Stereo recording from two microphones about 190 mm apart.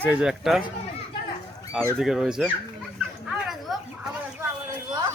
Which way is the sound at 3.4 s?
Centre (ahead or behind).